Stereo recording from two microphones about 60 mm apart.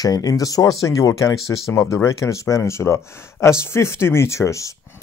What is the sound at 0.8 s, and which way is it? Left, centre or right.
Speech, left.